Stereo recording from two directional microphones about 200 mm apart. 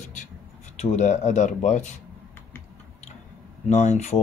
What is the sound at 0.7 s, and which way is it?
Speech, 35° left (ahead or behind).